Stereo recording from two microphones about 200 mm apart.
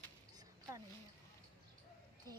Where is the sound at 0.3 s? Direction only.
20° right (ahead or behind).